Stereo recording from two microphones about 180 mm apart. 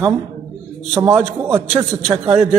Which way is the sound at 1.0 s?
15° right (ahead or behind).